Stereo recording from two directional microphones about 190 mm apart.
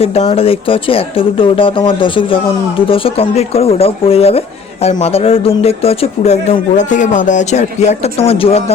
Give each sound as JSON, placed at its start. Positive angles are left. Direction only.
{"t": 0.0, "sound": "speech", "side_deg": 35}